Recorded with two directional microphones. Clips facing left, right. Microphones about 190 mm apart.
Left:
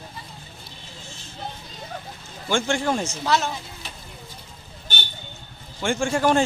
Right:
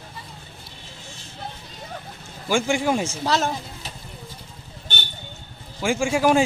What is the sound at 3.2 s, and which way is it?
Speech, 40° right (ahead or behind).